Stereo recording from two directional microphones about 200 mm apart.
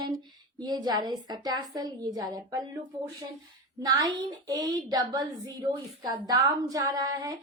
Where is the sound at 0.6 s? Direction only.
20° right (ahead or behind).